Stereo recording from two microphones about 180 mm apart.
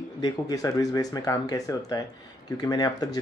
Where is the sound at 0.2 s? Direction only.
20° left (ahead or behind).